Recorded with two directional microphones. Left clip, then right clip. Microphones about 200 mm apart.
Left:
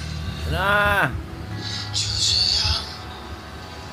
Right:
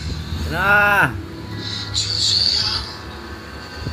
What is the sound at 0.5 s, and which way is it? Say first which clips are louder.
Speech: right 5 dB; 5° left (ahead or behind).